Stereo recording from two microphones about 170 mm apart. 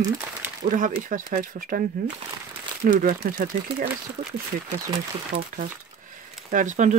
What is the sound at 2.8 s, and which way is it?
Speech, 55° right (ahead or behind).